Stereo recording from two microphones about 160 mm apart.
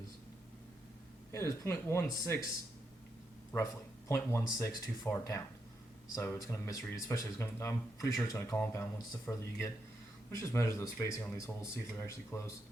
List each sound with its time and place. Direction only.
1.3 s speech: 15° left (ahead or behind)
4.1 s speech: 15° left (ahead or behind)